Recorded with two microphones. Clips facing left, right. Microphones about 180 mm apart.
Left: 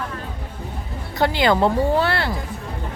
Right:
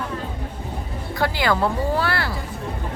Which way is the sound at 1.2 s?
20° left (ahead or behind).